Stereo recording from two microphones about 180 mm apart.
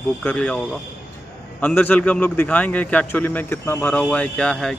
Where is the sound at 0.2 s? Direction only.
10° left (ahead or behind).